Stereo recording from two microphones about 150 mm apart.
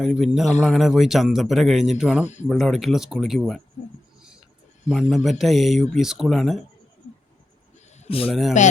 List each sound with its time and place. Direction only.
0.0 s speech: centre (ahead or behind)
2.2 s speech: 50° left (ahead or behind)
2.5 s speech: centre (ahead or behind)
4.2 s a sound: 5° right (ahead or behind)
4.9 s speech: 5° right (ahead or behind)
8.0 s speech: 40° left (ahead or behind)
8.3 s speech: centre (ahead or behind)